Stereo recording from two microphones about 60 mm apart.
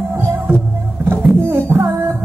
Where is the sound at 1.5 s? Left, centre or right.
Right.